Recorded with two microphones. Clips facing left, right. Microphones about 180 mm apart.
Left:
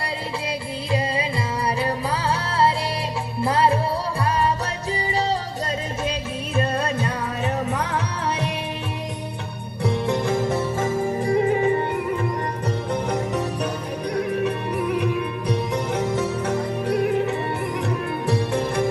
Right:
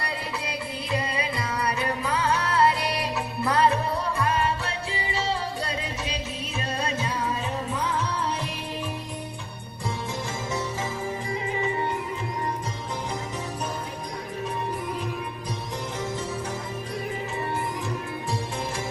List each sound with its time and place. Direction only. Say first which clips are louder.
0.4 s music: left 4 dB; 30° left (ahead or behind)
6.6 s music: left 6 dB; 55° left (ahead or behind)
9.8 s music: left 10 dB; 65° left (ahead or behind)
12.9 s music: left 9 dB; 65° left (ahead or behind)